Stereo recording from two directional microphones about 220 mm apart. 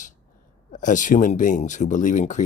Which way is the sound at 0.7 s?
35° left (ahead or behind).